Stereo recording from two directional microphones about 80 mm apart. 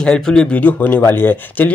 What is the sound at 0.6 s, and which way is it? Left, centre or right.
Speech, left.